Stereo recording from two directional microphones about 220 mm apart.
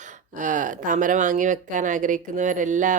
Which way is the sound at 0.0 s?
35° right (ahead or behind).